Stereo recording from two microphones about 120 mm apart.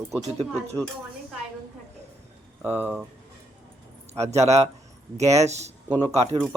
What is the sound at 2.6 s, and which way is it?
Speech, 15° right (ahead or behind).